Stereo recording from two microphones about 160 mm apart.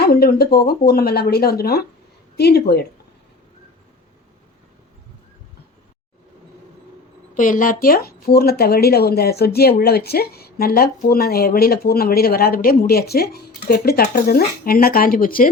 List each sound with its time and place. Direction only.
0.0 s speech: 70° left (ahead or behind)
2.3 s speech: 85° left
7.3 s speech: 55° left (ahead or behind); by 13.2 s 75° left (ahead or behind)
13.3 s speech: 85° left; by 15.4 s 65° left (ahead or behind)